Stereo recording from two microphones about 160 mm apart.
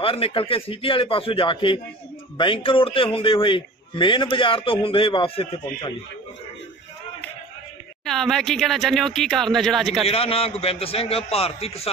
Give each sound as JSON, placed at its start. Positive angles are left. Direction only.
{"t": 0.0, "sound": "a man's voice", "side_deg": 35}
{"t": 8.0, "sound": "speech", "side_deg": 0}
{"t": 10.0, "sound": "a man's voice", "side_deg": 40}